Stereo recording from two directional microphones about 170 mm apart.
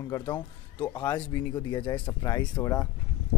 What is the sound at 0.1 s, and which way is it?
Speech, 20° left (ahead or behind).